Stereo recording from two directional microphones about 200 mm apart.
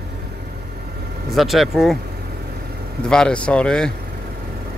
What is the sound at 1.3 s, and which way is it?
Speech, centre (ahead or behind).